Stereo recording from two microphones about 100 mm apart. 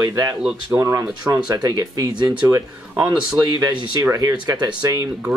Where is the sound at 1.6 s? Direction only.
40° right (ahead or behind).